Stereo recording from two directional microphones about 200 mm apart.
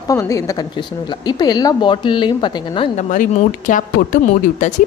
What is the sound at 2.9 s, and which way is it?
Speech, 40° left (ahead or behind).